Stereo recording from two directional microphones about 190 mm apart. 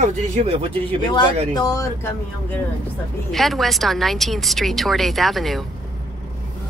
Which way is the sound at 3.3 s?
Centre (ahead or behind).